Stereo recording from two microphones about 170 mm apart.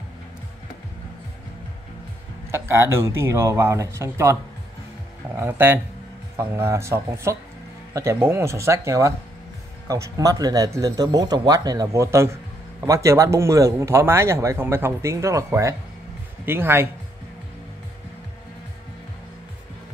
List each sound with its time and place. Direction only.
2.5 s speech: 15° right (ahead or behind)